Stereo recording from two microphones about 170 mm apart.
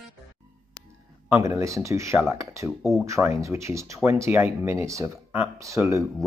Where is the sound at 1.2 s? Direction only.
15° right (ahead or behind).